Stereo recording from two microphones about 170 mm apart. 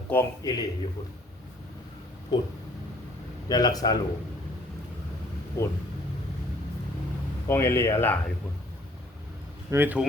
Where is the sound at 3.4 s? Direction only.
20° left (ahead or behind).